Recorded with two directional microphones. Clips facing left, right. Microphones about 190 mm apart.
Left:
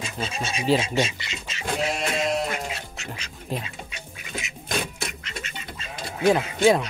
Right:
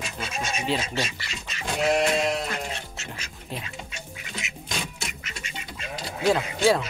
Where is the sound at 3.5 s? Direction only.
40° left (ahead or behind).